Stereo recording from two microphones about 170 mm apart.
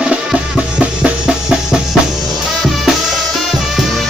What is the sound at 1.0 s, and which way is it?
Music, 5° right (ahead or behind).